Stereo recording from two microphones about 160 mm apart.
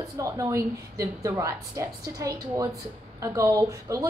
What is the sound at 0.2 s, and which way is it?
A woman's voice, 20° right (ahead or behind).